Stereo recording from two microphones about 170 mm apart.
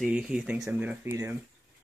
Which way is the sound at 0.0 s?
5° right (ahead or behind).